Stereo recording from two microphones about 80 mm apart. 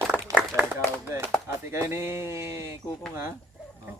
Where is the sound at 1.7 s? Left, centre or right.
Right.